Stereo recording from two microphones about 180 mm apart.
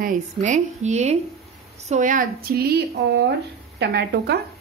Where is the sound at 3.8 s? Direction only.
65° right (ahead or behind).